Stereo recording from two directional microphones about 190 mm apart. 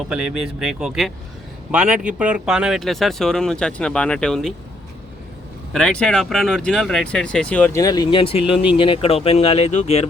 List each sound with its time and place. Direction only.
0.1 s speech: 5° right (ahead or behind)
5.7 s speech: 5° left (ahead or behind); by 10.1 s 35° left (ahead or behind)